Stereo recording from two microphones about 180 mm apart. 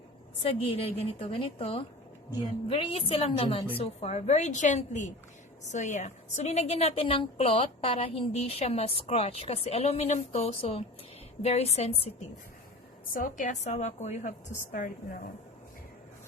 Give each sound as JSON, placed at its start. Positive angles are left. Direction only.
{"t": 0.4, "sound": "a woman's voice", "side_deg": 35}
{"t": 13.1, "sound": "a woman's voice", "side_deg": 45}